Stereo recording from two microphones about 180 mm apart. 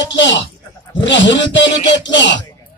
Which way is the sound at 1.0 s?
90° left.